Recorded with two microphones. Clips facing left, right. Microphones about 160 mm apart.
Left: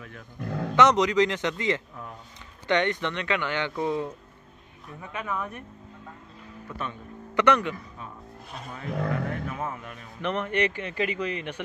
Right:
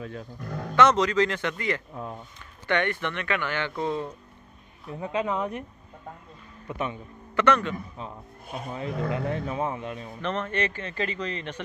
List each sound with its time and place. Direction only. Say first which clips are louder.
0.7 s speech: even; 15° left (ahead or behind)
4.9 s speech: right 6 dB; 25° right (ahead or behind)
7.3 s speech: even; 15° left (ahead or behind)
8.6 s speech: even; 25° right (ahead or behind)
10.2 s speech: left 2 dB; 15° left (ahead or behind)